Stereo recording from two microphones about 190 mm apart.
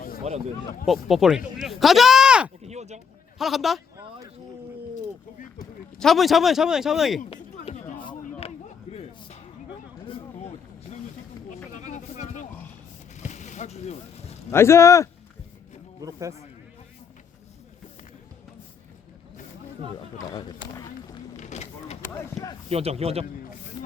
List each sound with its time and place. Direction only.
0.3 s speech: 35° right (ahead or behind)
0.9 s a man's voice: centre (ahead or behind)
2.6 s speech: 35° right (ahead or behind)
3.3 s a man's voice: centre (ahead or behind)
6.0 s a man's voice: centre (ahead or behind)
7.3 s music: 35° left (ahead or behind)
11.7 s a sound: 40° left (ahead or behind)
14.5 s a man's voice: 15° left (ahead or behind)
16.0 s speech: 20° right (ahead or behind)
21.3 s vehicle: 35° left (ahead or behind)
22.1 s speech: 15° left (ahead or behind)
22.7 s speech: 30° right (ahead or behind)